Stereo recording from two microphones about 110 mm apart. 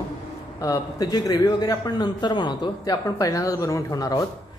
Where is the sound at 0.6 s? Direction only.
30° left (ahead or behind).